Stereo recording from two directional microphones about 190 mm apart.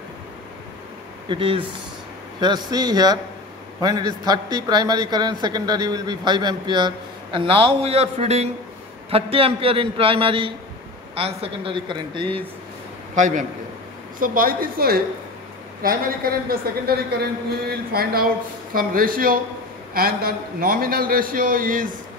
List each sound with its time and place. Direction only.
1.3 s a man's voice: 30° right (ahead or behind)
13.1 s a man's voice: 40° right (ahead or behind)